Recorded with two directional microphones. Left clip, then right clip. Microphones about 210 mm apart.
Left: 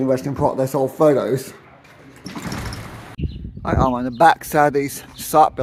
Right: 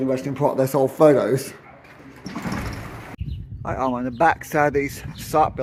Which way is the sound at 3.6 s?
15° left (ahead or behind).